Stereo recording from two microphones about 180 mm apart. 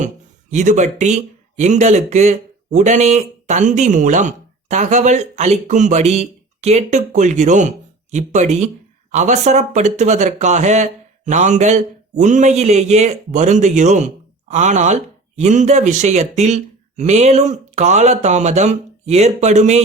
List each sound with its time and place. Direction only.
0.5 s speech: 40° right (ahead or behind)